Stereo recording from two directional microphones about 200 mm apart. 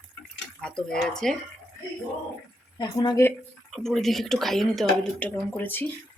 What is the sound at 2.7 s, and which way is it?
Speech, 20° left (ahead or behind).